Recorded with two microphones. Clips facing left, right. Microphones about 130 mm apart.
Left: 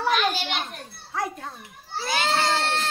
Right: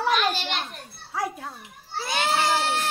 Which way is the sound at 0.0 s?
Centre (ahead or behind).